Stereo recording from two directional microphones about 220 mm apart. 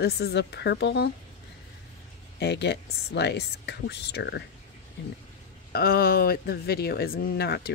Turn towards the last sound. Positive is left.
turn(degrees=45)  # may be behind; listen again after turning